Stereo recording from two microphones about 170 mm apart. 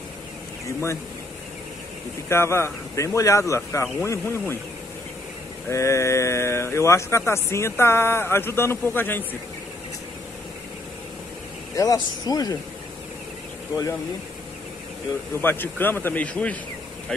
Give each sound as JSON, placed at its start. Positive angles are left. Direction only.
{"t": 2.2, "sound": "speech", "side_deg": 15}
{"t": 5.7, "sound": "speech", "side_deg": 15}
{"t": 11.7, "sound": "speech", "side_deg": 20}
{"t": 15.4, "sound": "speech", "side_deg": 10}